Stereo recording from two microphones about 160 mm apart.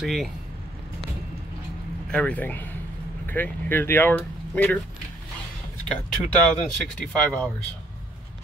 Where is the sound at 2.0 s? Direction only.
5° left (ahead or behind).